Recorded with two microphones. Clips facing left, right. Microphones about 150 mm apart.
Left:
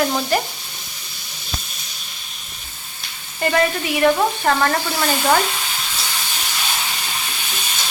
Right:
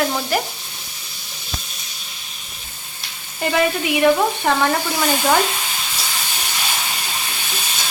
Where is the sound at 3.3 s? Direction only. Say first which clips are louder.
Even; 10° right (ahead or behind).